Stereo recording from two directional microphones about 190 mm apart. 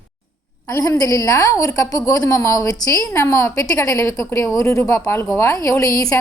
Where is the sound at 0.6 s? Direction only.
15° left (ahead or behind).